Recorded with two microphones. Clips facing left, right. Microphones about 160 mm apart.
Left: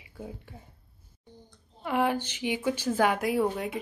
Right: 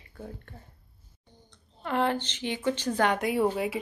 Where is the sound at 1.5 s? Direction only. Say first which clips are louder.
Even; 10° left (ahead or behind).